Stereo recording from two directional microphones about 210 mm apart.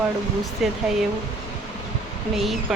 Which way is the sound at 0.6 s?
Centre (ahead or behind).